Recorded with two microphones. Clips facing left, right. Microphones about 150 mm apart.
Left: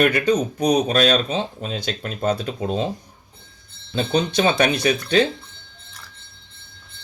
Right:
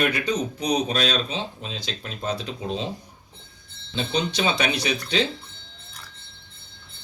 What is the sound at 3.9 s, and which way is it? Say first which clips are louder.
Speech: left 5 dB; 50° left (ahead or behind).